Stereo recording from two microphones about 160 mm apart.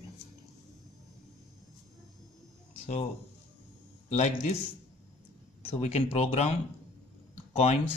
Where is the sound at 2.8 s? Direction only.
35° left (ahead or behind).